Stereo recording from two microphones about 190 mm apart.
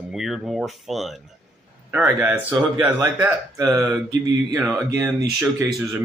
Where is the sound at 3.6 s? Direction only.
20° right (ahead or behind).